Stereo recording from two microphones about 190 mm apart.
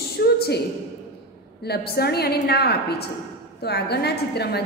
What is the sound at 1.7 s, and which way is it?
A woman's voice, 55° left (ahead or behind).